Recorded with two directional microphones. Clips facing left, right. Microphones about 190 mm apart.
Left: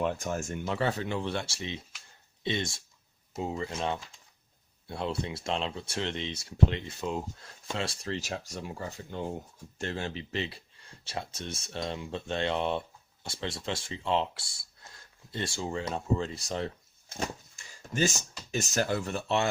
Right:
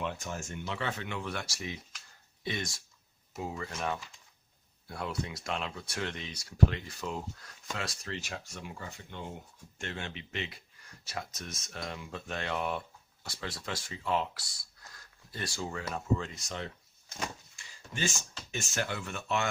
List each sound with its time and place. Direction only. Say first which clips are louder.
0.0 s speech: left 6 dB; 45° left (ahead or behind)
17.2 s a sound: left 4 dB; 40° left (ahead or behind)
18.5 s speech: left 6 dB; 40° left (ahead or behind)